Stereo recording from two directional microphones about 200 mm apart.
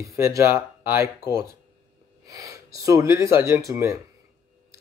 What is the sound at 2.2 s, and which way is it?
Speech, 15° right (ahead or behind).